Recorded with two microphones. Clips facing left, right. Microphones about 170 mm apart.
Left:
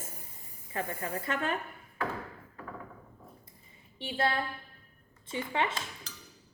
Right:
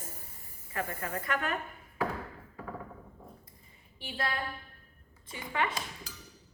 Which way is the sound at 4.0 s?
25° left (ahead or behind).